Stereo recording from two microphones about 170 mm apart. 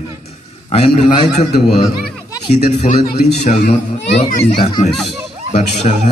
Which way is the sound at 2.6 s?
40° left (ahead or behind).